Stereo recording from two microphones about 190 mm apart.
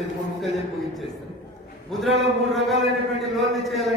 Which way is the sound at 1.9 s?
Centre (ahead or behind).